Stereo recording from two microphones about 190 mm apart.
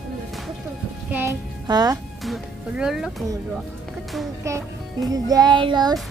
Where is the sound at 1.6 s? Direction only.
20° right (ahead or behind).